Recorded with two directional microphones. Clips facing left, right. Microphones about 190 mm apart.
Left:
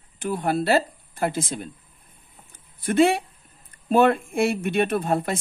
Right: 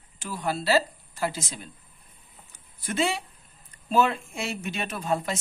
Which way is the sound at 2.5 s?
55° left (ahead or behind).